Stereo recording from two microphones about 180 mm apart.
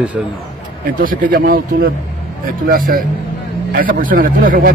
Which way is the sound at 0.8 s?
50° right (ahead or behind).